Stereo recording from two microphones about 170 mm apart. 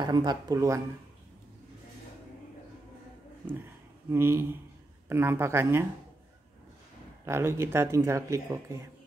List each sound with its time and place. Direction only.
0.0 s speech: 25° right (ahead or behind)
4.1 s speech: 15° right (ahead or behind)
7.2 s speech: 15° right (ahead or behind)